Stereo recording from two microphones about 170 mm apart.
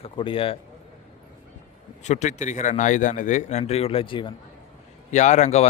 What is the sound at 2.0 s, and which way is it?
A man's voice, 45° left (ahead or behind).